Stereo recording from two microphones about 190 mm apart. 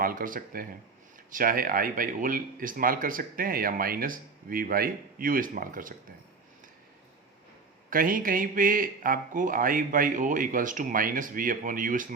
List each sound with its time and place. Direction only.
0.0 s speech: 50° right (ahead or behind)
7.9 s speech: 45° right (ahead or behind)